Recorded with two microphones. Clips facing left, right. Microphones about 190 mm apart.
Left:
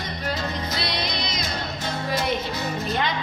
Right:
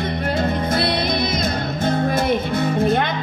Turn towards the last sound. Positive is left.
turn(degrees=-55)  # may be behind; listen again after turning